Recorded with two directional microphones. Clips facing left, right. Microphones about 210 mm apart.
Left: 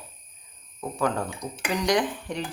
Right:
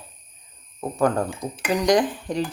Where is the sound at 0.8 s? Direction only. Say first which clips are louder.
Right 5 dB; 35° right (ahead or behind).